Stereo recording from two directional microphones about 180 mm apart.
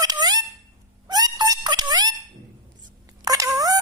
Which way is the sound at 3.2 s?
20° right (ahead or behind).